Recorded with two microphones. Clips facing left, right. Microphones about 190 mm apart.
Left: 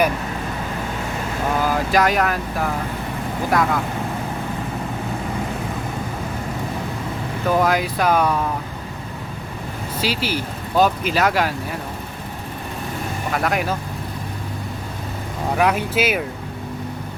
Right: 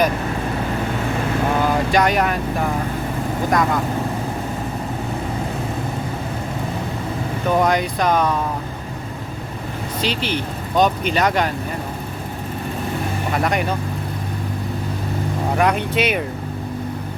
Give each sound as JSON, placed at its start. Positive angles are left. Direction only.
{"t": 1.9, "sound": "speech", "side_deg": 0}
{"t": 7.4, "sound": "speech", "side_deg": 5}
{"t": 10.0, "sound": "speech", "side_deg": 5}
{"t": 13.3, "sound": "speech", "side_deg": 0}
{"t": 15.5, "sound": "speech", "side_deg": 5}